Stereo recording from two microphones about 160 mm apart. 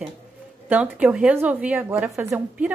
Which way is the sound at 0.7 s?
10° right (ahead or behind).